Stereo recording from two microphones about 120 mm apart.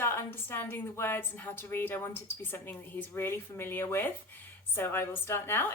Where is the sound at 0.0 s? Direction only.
20° left (ahead or behind).